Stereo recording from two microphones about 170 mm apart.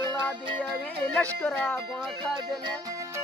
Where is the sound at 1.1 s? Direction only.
5° left (ahead or behind).